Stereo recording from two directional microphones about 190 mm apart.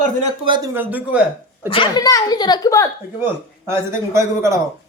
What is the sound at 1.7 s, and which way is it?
A child's voice, 25° left (ahead or behind).